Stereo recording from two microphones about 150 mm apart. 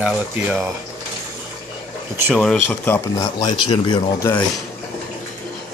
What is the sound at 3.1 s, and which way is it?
Speech, 25° left (ahead or behind).